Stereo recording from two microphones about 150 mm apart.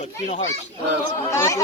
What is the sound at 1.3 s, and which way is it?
Speech, 20° left (ahead or behind).